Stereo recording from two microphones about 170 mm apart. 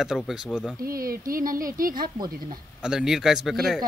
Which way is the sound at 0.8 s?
60° right (ahead or behind).